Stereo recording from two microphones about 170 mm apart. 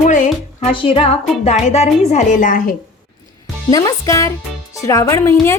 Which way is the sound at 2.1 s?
50° left (ahead or behind).